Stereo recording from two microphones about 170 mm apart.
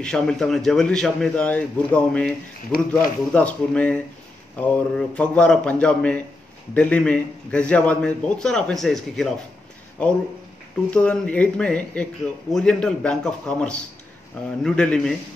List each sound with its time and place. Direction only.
0.0 s a man's voice: 5° left (ahead or behind)